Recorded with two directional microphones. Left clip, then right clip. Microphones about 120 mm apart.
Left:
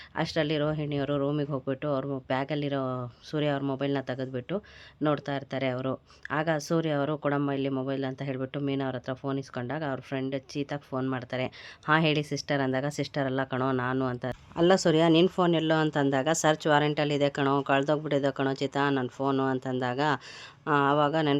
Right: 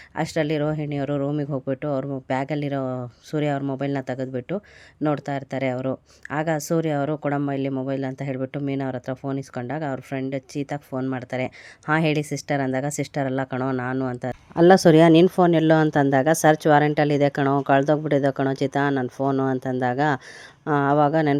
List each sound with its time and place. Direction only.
0.2 s a woman's voice: 30° right (ahead or behind)
14.1 s speech: 30° right (ahead or behind)
14.5 s speech: 60° right (ahead or behind)
15.2 s speech: 50° right (ahead or behind)